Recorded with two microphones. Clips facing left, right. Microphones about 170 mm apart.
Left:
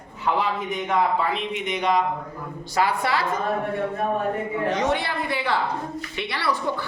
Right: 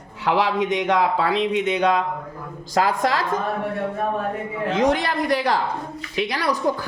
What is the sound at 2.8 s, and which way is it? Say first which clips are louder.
Speech: right 2 dB; 90° right.